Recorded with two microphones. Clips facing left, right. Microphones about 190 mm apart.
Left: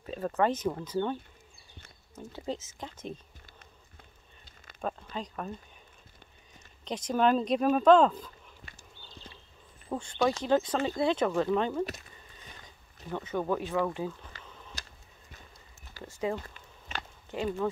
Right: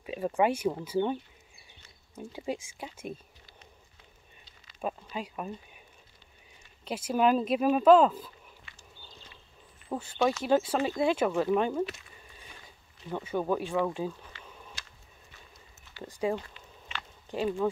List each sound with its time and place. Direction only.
0.0 s speech: 10° right (ahead or behind)
2.3 s speech: 10° right (ahead or behind)
5.1 s speech: 10° right (ahead or behind)
6.8 s speech: 5° right (ahead or behind)
8.7 s horse: 40° left (ahead or behind)
9.8 s speech: 5° right (ahead or behind)
13.1 s speech: 10° right (ahead or behind)
14.4 s a sound: 10° right (ahead or behind)
15.3 s horse: 40° left (ahead or behind)
16.0 s a sound: 15° right (ahead or behind)
16.3 s a sound: 45° left (ahead or behind)
17.3 s speech: 15° right (ahead or behind)